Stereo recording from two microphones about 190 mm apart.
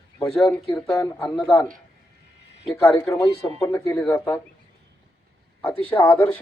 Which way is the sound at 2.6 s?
5° left (ahead or behind).